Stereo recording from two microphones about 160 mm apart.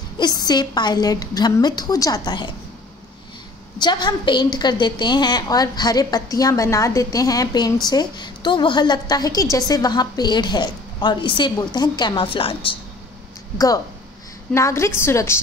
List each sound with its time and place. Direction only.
0.2 s a woman's voice: 25° left (ahead or behind)
3.8 s a woman's voice: 25° left (ahead or behind)
14.5 s a woman's voice: 15° left (ahead or behind)